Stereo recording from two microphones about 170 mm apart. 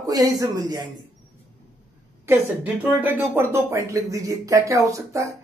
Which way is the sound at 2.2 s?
10° right (ahead or behind).